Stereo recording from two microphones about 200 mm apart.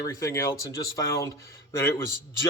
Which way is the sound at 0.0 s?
15° left (ahead or behind).